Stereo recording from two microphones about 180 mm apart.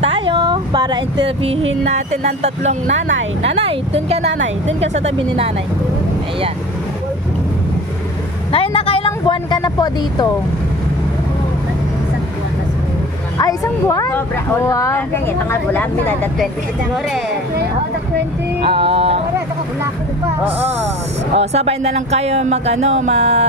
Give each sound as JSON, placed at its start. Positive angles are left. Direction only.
{"t": 0.0, "sound": "music", "side_deg": -30}
{"t": 1.9, "sound": "a woman's voice", "side_deg": -40}
{"t": 4.2, "sound": "speech", "side_deg": -80}
{"t": 4.6, "sound": "a woman's voice", "side_deg": -35}
{"t": 8.5, "sound": "a sound", "side_deg": 30}
{"t": 13.4, "sound": "speech", "side_deg": 20}
{"t": 18.6, "sound": "music", "side_deg": -30}
{"t": 21.4, "sound": "a woman's voice", "side_deg": -35}